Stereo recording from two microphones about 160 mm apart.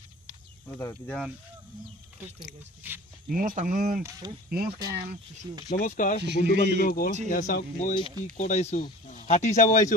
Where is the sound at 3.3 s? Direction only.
60° right (ahead or behind).